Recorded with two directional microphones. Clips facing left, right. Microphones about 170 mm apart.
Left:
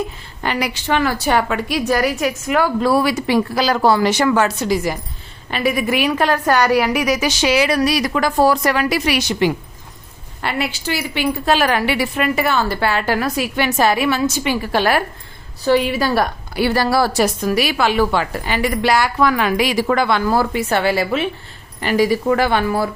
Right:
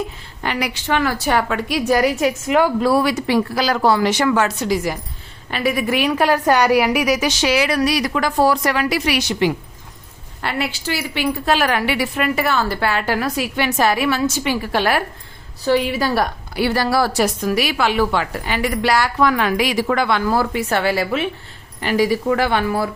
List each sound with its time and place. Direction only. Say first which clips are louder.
0.4 s a woman's voice: left 1 dB; 35° left (ahead or behind)
1.8 s a woman's voice: right 3 dB; 20° right (ahead or behind)
2.8 s a woman's voice: even; 5° left (ahead or behind)
6.1 s a woman's voice: right 2 dB; 10° right (ahead or behind)
7.4 s a woman's voice: left 2 dB; 25° left (ahead or behind); by 9.5 s 45° left (ahead or behind)
10.4 s a woman's voice: left 1 dB; 15° left (ahead or behind); by 13.1 s 35° left (ahead or behind)
13.1 s a woman's voice: left 1 dB; 50° left (ahead or behind)
13.7 s a woman's voice: left 1 dB; 25° left (ahead or behind)
14.7 s a woman's voice: left 2 dB; 40° left (ahead or behind)
15.6 s a woman's voice: left 2 dB; 65° left (ahead or behind); by 19.1 s 20° left (ahead or behind)
19.2 s a woman's voice: right 1 dB; 5° left (ahead or behind)
19.5 s a woman's voice: left 2 dB; 30° left (ahead or behind)
21.8 s a woman's voice: left 1 dB; 45° left (ahead or behind)